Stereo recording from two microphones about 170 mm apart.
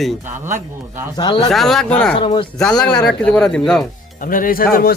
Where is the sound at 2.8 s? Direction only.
5° left (ahead or behind).